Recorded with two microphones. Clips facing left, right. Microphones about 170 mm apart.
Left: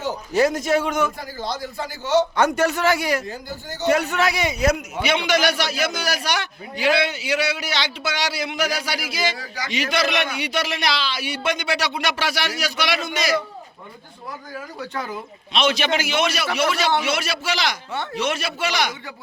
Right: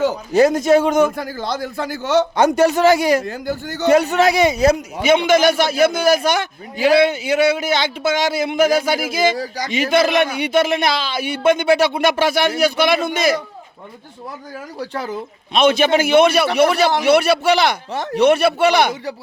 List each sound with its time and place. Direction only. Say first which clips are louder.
0.3 s a man's voice: right 6 dB; 20° right (ahead or behind)
0.8 s speech: right 7 dB; 40° right (ahead or behind)
1.1 s a man's voice: right 5 dB; 60° right (ahead or behind)
2.3 s a man's voice: right 4 dB; 20° right (ahead or behind)
2.6 s speech: right 7 dB; 35° right (ahead or behind)
3.2 s a man's voice: right 8 dB; 65° right (ahead or behind)
4.0 s speech: right 7 dB; 40° right (ahead or behind)
5.0 s a man's voice: right 7 dB; 50° right (ahead or behind)
14.8 s a man's voice: right 5 dB; 30° right (ahead or behind)
15.5 s a man's voice: right 7 dB; 50° right (ahead or behind)